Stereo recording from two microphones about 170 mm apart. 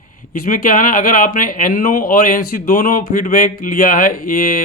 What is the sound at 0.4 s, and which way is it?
Speech, 55° left (ahead or behind).